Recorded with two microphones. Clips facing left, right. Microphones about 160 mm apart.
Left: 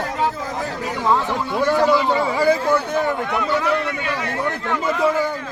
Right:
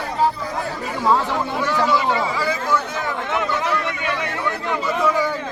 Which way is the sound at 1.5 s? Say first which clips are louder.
Left 5 dB; 45° left (ahead or behind).